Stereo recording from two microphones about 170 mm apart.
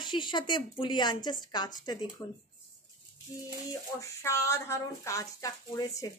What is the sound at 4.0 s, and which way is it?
Speech, 15° left (ahead or behind).